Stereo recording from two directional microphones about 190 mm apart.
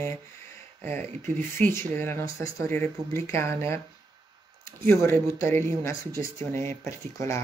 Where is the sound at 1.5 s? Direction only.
10° left (ahead or behind).